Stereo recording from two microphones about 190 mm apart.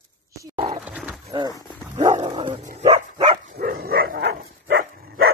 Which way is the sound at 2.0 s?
35° right (ahead or behind).